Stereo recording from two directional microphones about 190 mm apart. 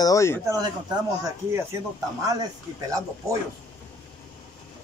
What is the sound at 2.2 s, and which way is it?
Speech, 20° right (ahead or behind).